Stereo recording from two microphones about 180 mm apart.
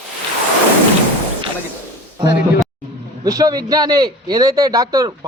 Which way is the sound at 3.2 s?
20° right (ahead or behind).